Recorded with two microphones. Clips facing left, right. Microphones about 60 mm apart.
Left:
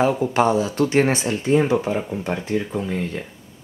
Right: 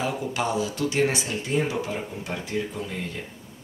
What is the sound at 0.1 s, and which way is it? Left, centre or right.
Speech, left.